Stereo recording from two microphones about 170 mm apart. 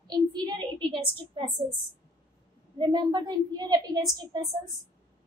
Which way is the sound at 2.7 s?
25° right (ahead or behind).